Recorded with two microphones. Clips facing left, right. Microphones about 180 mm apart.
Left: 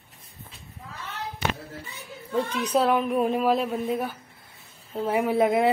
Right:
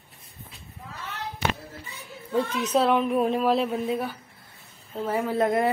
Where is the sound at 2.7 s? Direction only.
5° left (ahead or behind).